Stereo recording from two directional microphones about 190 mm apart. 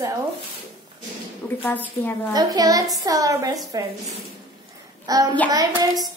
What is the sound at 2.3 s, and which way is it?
Speech, 20° right (ahead or behind).